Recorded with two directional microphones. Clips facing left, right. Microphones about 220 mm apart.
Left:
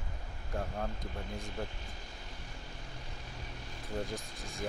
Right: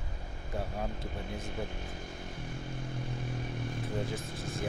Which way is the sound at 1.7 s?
50° right (ahead or behind).